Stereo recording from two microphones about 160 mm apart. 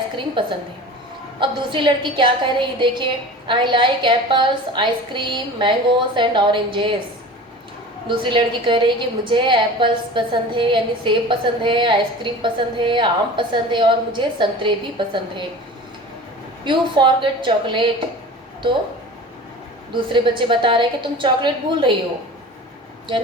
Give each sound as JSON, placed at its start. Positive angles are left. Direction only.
{"t": 0.4, "sound": "a woman's voice", "side_deg": -30}
{"t": 8.0, "sound": "a woman's voice", "side_deg": -30}
{"t": 16.6, "sound": "a woman's voice", "side_deg": -30}
{"t": 19.9, "sound": "a woman's voice", "side_deg": -30}